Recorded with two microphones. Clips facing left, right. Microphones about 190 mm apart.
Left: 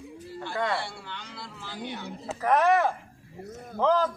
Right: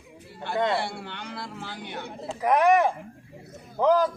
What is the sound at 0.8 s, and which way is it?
Speech, 55° right (ahead or behind).